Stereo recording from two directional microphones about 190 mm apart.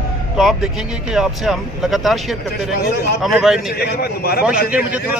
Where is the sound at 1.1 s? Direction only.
Centre (ahead or behind).